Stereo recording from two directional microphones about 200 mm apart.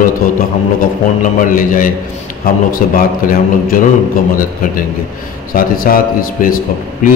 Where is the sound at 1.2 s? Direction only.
40° left (ahead or behind).